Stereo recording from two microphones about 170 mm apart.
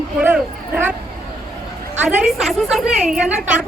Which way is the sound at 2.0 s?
Centre (ahead or behind).